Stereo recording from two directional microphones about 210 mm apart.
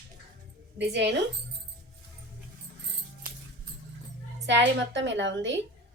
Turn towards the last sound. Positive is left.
turn(degrees=-60)  # may be behind; listen again after turning